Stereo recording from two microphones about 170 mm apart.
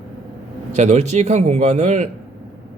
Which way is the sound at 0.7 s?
45° right (ahead or behind).